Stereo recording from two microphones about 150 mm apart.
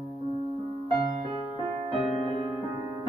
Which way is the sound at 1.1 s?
40° right (ahead or behind).